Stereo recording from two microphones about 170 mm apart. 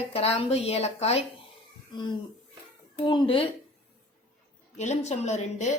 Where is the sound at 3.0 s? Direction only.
30° left (ahead or behind).